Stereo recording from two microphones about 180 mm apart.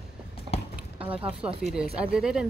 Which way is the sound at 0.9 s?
30° right (ahead or behind).